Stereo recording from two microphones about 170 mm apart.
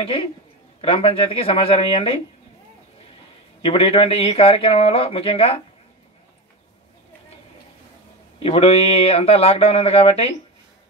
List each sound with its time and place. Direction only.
0.0 s speech: 30° left (ahead or behind)
3.6 s speech: 35° left (ahead or behind)
8.4 s speech: 35° left (ahead or behind)